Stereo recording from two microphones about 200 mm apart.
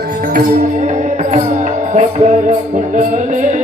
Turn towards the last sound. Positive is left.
turn(degrees=-40)  # may be behind; listen again after turning